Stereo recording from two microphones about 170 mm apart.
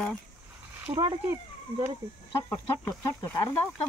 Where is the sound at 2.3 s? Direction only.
15° left (ahead or behind).